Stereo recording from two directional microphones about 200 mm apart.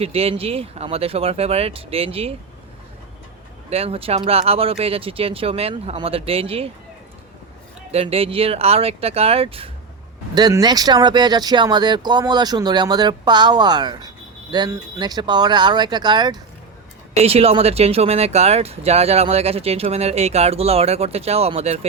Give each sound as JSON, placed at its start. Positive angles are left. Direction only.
{"t": 0.0, "sound": "speech", "side_deg": -30}
{"t": 3.7, "sound": "speech", "side_deg": -30}
{"t": 7.9, "sound": "speech", "side_deg": -30}